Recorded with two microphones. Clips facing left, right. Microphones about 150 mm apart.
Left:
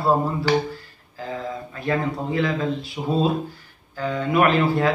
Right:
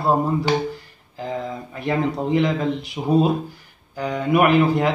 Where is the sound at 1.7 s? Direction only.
20° right (ahead or behind).